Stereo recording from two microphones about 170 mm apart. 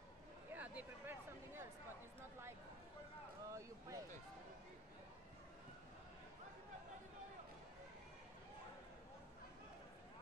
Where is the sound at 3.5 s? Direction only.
20° right (ahead or behind).